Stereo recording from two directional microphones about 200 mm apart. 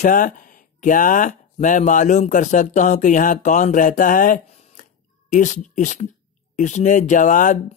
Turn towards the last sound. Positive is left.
turn(degrees=40)  # may be behind; listen again after turning